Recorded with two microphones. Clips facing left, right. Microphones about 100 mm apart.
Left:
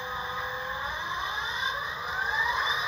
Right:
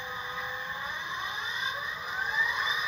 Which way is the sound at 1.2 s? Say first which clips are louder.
Left 3 dB; 20° left (ahead or behind).